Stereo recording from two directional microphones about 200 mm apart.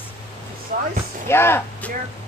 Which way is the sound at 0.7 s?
45° right (ahead or behind).